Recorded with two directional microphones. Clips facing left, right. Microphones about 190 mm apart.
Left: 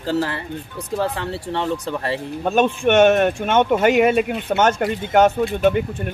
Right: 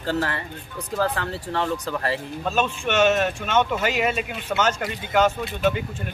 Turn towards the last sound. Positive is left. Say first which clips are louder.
# left 6 dB
turn(degrees=55)  # may be behind; listen again after turning